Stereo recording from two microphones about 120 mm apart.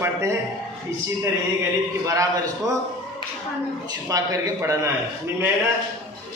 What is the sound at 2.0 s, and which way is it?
Speech, 30° right (ahead or behind).